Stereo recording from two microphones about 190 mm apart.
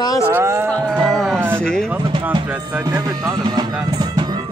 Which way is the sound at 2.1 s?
25° right (ahead or behind).